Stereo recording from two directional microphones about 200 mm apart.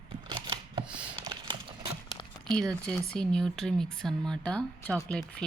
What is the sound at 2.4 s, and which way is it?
A woman's voice, 5° left (ahead or behind).